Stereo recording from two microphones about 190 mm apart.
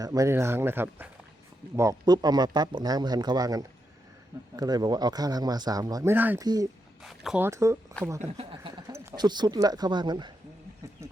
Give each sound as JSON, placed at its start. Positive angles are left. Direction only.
{"t": 0.0, "sound": "speech", "side_deg": -20}
{"t": 7.4, "sound": "speech", "side_deg": -15}
{"t": 8.4, "sound": "speech", "side_deg": -30}
{"t": 8.9, "sound": "speech", "side_deg": -20}
{"t": 11.0, "sound": "a sound", "side_deg": -15}